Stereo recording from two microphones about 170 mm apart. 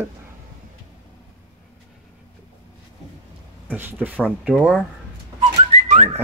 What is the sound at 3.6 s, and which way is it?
Speech, 10° right (ahead or behind).